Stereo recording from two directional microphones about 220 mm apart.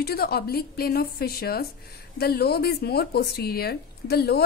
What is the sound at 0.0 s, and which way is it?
A woman's voice, 45° left (ahead or behind).